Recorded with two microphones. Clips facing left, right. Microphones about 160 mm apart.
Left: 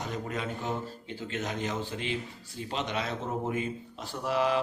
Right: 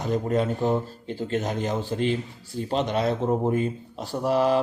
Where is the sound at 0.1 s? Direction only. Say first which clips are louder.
Right 15 dB; 40° right (ahead or behind).